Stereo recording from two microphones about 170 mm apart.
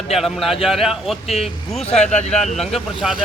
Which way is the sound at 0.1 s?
Centre (ahead or behind).